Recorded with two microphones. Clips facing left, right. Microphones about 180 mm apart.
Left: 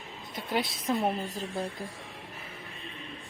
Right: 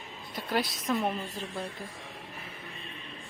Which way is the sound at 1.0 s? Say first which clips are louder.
Left 2 dB; 35° left (ahead or behind).